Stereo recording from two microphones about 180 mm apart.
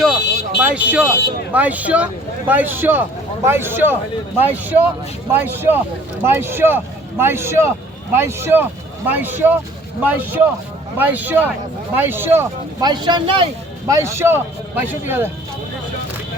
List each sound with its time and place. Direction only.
0.6 s speech: 10° right (ahead or behind); by 13.9 s 25° right (ahead or behind)
13.9 s speech: 15° right (ahead or behind)